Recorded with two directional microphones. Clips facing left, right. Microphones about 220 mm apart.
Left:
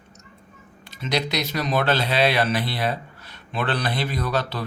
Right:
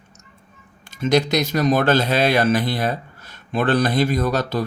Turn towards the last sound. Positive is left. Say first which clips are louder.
# right 5 dB
turn(degrees=-45)  # may be behind; listen again after turning